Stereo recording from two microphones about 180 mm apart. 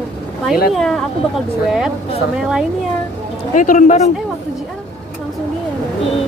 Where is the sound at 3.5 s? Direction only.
45° left (ahead or behind).